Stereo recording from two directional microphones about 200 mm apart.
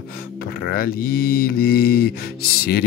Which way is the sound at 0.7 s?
45° left (ahead or behind).